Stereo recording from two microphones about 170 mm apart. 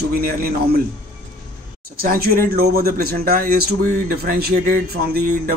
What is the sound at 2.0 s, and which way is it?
Speech, 60° right (ahead or behind).